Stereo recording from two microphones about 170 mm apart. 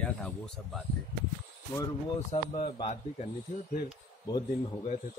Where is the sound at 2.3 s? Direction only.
35° left (ahead or behind).